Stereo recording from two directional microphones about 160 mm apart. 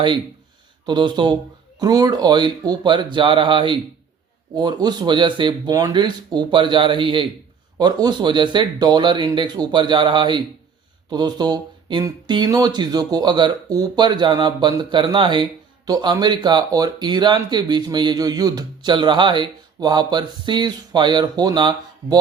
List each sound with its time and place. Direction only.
0.9 s speech: 25° right (ahead or behind)